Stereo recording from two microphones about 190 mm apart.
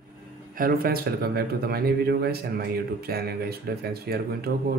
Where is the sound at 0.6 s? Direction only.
50° right (ahead or behind).